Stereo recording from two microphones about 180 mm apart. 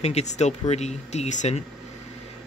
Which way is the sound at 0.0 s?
40° left (ahead or behind).